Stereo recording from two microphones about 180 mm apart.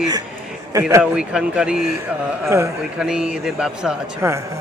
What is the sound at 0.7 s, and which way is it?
Speech, 15° right (ahead or behind).